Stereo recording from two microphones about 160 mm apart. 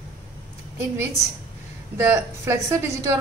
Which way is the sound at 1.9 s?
15° right (ahead or behind).